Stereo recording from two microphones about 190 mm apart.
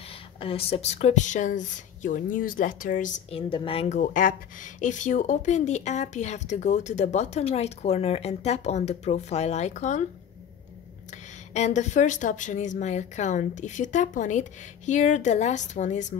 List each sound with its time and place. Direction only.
0.4 s speech: 30° left (ahead or behind); by 3.1 s 45° left (ahead or behind)
3.3 s speech: 30° left (ahead or behind)
11.5 s speech: 40° left (ahead or behind)